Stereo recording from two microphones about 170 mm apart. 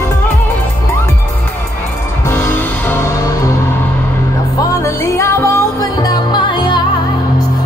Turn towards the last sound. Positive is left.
turn(degrees=25)  # may be behind; listen again after turning